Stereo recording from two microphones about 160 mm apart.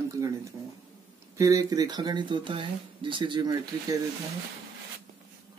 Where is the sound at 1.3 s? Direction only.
20° right (ahead or behind).